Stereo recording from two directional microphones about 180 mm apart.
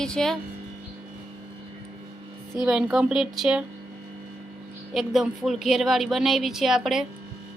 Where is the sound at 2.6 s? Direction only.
5° right (ahead or behind).